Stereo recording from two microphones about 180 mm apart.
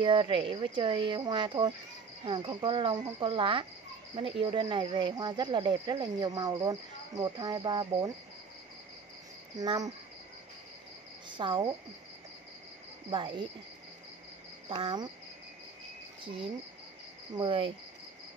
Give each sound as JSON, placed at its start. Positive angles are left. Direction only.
{"t": 0.0, "sound": "speech", "side_deg": -25}
{"t": 9.6, "sound": "speech", "side_deg": -20}
{"t": 11.2, "sound": "speech", "side_deg": -25}
{"t": 14.7, "sound": "speech", "side_deg": -25}
{"t": 17.3, "sound": "speech", "side_deg": -25}